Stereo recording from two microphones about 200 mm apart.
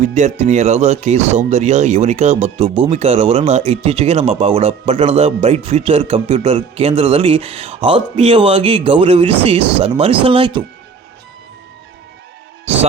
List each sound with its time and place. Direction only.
0.0 s speech: 35° right (ahead or behind)